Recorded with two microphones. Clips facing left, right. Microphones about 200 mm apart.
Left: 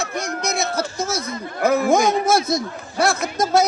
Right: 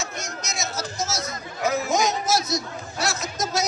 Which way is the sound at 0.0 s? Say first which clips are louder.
Left 8 dB; 60° left (ahead or behind).